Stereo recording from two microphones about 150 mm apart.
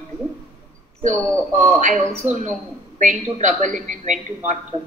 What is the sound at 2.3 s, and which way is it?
A woman's voice, 55° right (ahead or behind).